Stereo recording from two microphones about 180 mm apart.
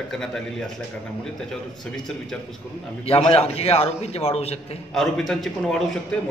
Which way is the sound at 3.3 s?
35° left (ahead or behind).